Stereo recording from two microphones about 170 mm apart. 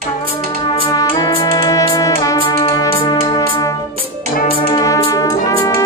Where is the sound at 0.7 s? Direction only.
20° left (ahead or behind).